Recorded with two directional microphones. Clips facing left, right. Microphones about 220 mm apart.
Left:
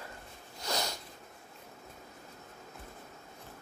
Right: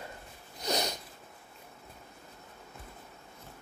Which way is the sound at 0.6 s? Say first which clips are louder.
Right 4 dB; 20° right (ahead or behind).